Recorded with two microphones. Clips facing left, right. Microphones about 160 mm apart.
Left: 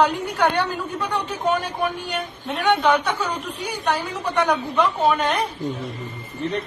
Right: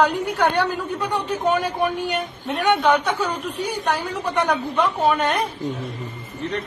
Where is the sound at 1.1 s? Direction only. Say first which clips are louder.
Right 2 dB; 10° right (ahead or behind).